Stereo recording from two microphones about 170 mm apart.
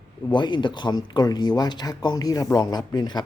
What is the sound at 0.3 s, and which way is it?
Speech, 25° left (ahead or behind).